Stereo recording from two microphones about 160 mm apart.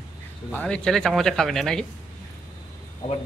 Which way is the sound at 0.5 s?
5° left (ahead or behind).